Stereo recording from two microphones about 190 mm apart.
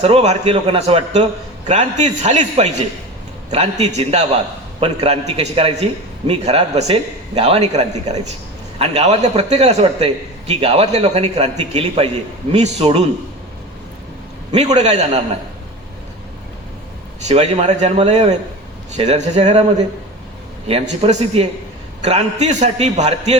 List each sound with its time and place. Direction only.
0.0 s a man's voice: 35° right (ahead or behind)
14.5 s a man's voice: 35° right (ahead or behind)
17.2 s a man's voice: 35° right (ahead or behind)
21.0 s a man's voice: 35° right (ahead or behind)